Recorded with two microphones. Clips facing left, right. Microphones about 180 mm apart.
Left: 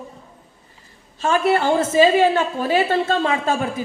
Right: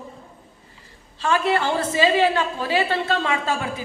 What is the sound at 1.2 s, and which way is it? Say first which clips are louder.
A woman's voice: left 3 dB; 45° left (ahead or behind).